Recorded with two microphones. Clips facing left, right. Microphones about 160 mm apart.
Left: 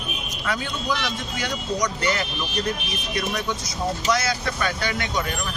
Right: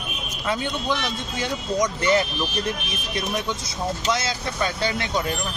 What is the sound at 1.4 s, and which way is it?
Speech, 25° right (ahead or behind).